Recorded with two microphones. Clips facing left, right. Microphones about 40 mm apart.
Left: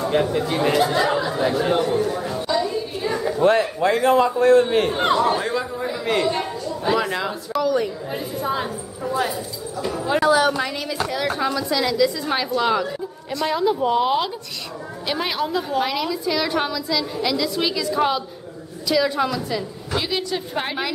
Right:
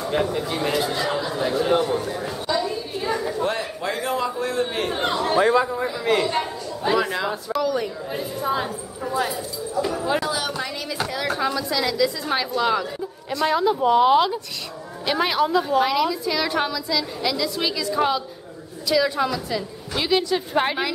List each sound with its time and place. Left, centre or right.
0.0 s speech: centre
0.9 s chatter: centre
3.4 s a man's voice: left
4.6 s speech: centre
5.4 s a man's voice: centre
5.9 s a man's voice: centre
10.2 s a woman's voice: left
10.9 s a woman's voice: centre
20.0 s a woman's voice: centre